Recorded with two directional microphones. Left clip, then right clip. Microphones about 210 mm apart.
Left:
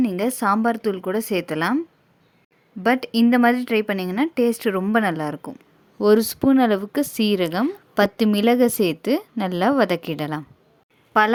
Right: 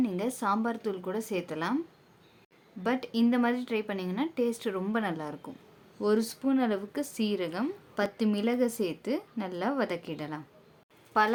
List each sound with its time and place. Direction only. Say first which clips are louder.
0.0 s speech: left 9 dB; 40° left (ahead or behind)
2.8 s speech: left 10 dB; 35° left (ahead or behind)